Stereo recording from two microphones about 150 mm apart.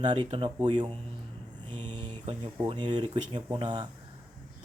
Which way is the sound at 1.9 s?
30° right (ahead or behind).